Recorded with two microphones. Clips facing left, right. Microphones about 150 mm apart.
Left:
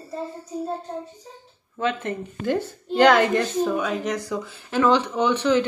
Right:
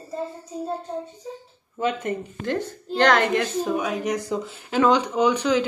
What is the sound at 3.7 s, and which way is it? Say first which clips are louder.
Speech: even; 15° right (ahead or behind).